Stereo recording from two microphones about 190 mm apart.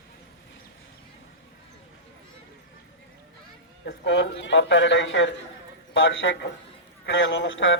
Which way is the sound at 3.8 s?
70° left (ahead or behind).